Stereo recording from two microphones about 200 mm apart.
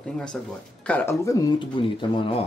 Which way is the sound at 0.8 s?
10° left (ahead or behind).